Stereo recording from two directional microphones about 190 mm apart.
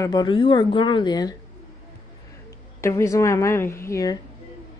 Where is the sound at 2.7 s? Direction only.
15° left (ahead or behind).